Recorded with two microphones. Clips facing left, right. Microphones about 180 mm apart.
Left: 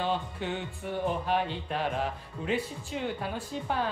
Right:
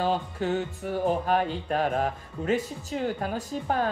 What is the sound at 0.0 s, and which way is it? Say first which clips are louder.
Speech: right 4 dB; 40° right (ahead or behind).